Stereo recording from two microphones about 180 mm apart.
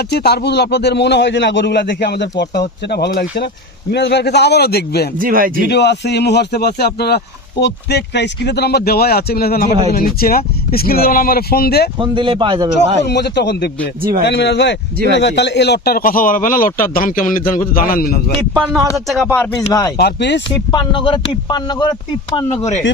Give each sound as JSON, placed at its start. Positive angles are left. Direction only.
{"t": 0.1, "sound": "speech", "side_deg": 65}
{"t": 5.2, "sound": "speech", "side_deg": -50}
{"t": 5.5, "sound": "speech", "side_deg": 70}
{"t": 11.9, "sound": "speech", "side_deg": -25}
{"t": 13.1, "sound": "a man's voice", "side_deg": 70}
{"t": 18.5, "sound": "speech", "side_deg": -5}
{"t": 20.0, "sound": "speech", "side_deg": 70}
{"t": 20.7, "sound": "speech", "side_deg": 25}